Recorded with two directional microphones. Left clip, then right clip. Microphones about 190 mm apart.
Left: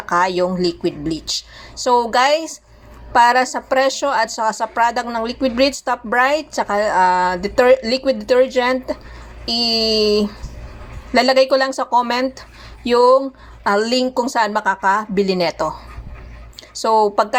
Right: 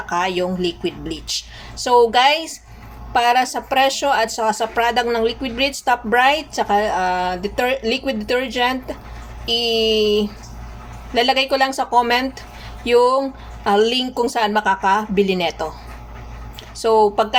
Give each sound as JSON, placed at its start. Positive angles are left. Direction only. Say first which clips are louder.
{"t": 0.1, "sound": "a woman's voice", "louder": "left 4 dB", "side_deg": 20}
{"t": 16.8, "sound": "a woman's voice", "louder": "even", "side_deg": 20}